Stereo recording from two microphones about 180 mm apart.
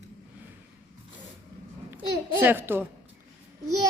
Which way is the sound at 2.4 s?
10° right (ahead or behind).